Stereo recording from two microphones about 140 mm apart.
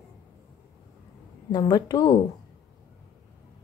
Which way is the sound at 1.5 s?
30° left (ahead or behind).